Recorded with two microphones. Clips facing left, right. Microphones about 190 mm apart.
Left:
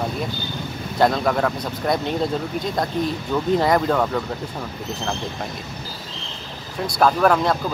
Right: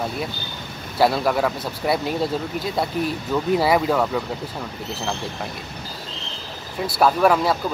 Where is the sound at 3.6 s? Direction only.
5° right (ahead or behind).